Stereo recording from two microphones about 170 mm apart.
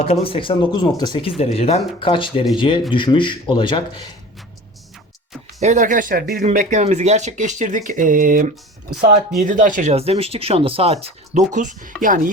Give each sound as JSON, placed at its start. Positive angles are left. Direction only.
{"t": 0.0, "sound": "speech", "side_deg": 35}
{"t": 5.5, "sound": "speech", "side_deg": -45}
{"t": 6.4, "sound": "speech", "side_deg": -50}
{"t": 9.9, "sound": "speech", "side_deg": -35}